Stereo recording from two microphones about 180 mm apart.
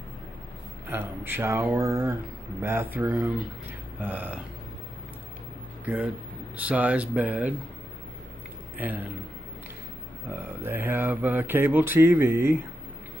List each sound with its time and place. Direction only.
0.8 s mantra: 10° right (ahead or behind)
6.5 s mantra: 10° right (ahead or behind)
8.7 s a man's voice: 10° right (ahead or behind)
10.6 s mantra: 10° right (ahead or behind)